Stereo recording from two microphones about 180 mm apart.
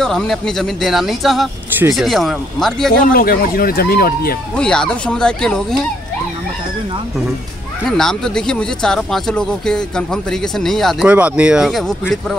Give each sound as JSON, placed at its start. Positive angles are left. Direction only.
{"t": 0.0, "sound": "speech", "side_deg": 0}
{"t": 2.9, "sound": "speech", "side_deg": 55}
{"t": 4.6, "sound": "speech", "side_deg": 5}
{"t": 8.0, "sound": "speech", "side_deg": 5}